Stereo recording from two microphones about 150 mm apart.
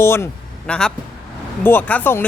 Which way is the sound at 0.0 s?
15° left (ahead or behind).